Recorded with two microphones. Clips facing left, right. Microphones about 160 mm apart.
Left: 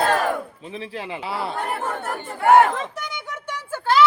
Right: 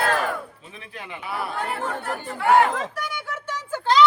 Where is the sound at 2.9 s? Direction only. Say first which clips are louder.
Right 1 dB; 20° left (ahead or behind).